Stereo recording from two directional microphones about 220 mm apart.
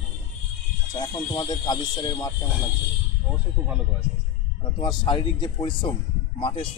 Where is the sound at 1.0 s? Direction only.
20° left (ahead or behind).